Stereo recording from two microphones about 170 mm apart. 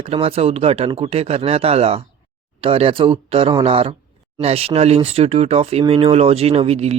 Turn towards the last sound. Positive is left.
turn(degrees=-40)  # may be behind; listen again after turning